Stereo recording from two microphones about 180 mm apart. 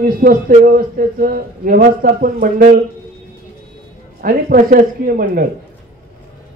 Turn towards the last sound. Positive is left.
turn(degrees=-55)  # may be behind; listen again after turning